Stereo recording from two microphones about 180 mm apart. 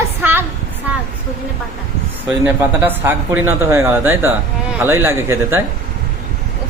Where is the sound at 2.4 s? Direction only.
10° right (ahead or behind).